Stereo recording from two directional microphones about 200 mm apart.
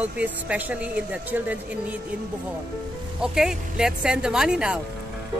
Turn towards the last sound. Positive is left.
turn(degrees=-5)  # may be behind; listen again after turning